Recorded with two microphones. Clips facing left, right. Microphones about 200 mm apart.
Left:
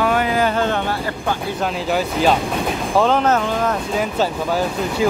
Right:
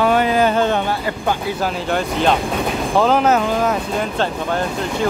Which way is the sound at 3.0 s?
5° right (ahead or behind).